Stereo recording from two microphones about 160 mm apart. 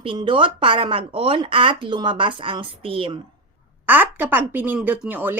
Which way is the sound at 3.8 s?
10° right (ahead or behind).